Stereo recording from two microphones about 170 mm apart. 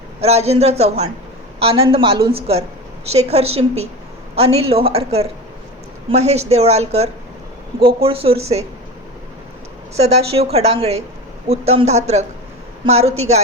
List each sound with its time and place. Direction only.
0.2 s a woman's voice: 40° right (ahead or behind)
10.0 s a woman's voice: 35° right (ahead or behind)